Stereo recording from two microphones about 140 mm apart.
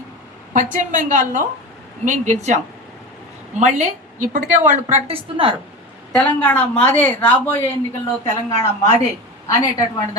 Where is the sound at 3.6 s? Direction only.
60° right (ahead or behind); by 5.5 s 40° right (ahead or behind).